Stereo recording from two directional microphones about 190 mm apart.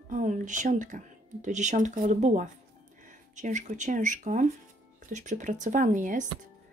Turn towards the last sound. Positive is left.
turn(degrees=-40)  # may be behind; listen again after turning